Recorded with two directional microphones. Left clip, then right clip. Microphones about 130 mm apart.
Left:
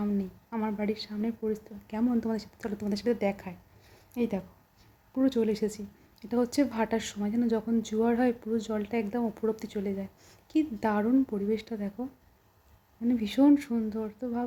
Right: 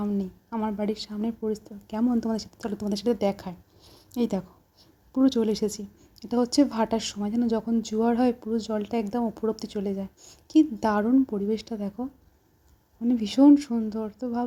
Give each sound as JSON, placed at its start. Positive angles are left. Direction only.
{"t": 0.0, "sound": "a woman's voice", "side_deg": -15}
{"t": 13.1, "sound": "a woman's voice", "side_deg": -15}